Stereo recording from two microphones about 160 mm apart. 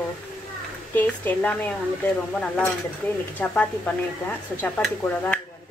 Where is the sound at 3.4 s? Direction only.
10° left (ahead or behind).